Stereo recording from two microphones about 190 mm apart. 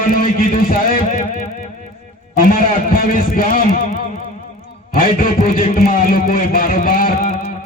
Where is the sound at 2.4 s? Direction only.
45° left (ahead or behind).